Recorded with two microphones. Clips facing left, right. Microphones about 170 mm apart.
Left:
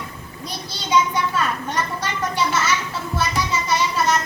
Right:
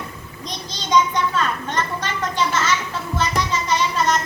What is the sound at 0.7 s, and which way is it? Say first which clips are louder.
A child's voice: right 1 dB; 10° left (ahead or behind).